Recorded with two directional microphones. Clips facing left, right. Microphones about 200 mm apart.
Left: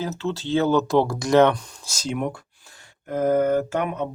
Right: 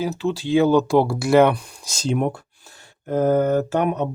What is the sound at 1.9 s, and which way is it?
Speech, 30° right (ahead or behind).